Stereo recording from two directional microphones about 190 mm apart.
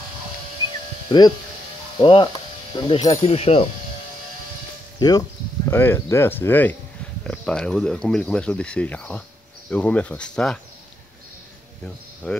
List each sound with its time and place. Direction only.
1.1 s speech: 25° left (ahead or behind)
5.7 s speech: 15° left (ahead or behind)